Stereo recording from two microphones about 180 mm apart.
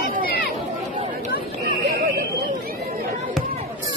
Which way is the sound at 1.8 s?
60° right (ahead or behind).